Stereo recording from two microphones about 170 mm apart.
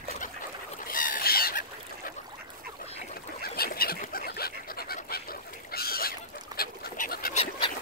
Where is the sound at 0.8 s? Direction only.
55° left (ahead or behind).